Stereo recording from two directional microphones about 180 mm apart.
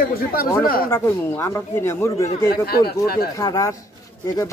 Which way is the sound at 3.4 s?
20° left (ahead or behind).